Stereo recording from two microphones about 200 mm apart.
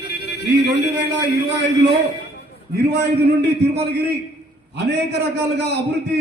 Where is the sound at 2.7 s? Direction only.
55° right (ahead or behind).